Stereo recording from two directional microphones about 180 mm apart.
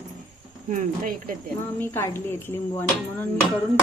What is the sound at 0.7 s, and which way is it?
Speech, 50° right (ahead or behind).